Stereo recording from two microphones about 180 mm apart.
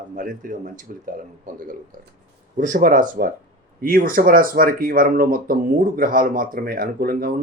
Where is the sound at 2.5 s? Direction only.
50° right (ahead or behind).